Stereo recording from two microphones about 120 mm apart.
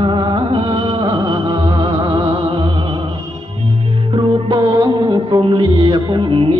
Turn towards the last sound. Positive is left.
turn(degrees=-40)  # may be behind; listen again after turning